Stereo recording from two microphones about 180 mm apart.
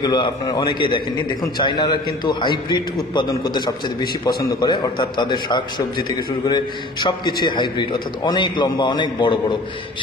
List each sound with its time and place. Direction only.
0.0 s a man's voice: 20° left (ahead or behind)